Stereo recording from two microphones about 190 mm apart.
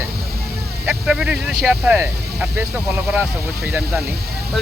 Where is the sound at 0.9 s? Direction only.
5° right (ahead or behind).